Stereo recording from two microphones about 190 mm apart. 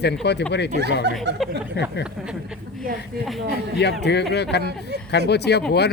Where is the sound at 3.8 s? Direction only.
65° left (ahead or behind).